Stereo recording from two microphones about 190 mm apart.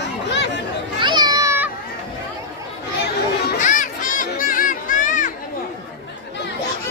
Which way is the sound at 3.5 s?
40° left (ahead or behind).